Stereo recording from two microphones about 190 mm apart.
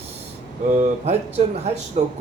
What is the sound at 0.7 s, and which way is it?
Speech, 35° right (ahead or behind).